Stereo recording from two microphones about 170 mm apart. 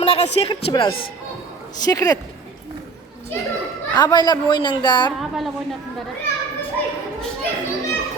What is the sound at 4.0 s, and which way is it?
A man's voice, 25° left (ahead or behind).